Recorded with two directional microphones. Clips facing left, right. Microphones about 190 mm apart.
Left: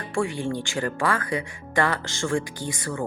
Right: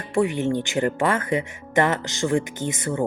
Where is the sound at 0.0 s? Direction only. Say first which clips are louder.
Right 5 dB; 20° right (ahead or behind).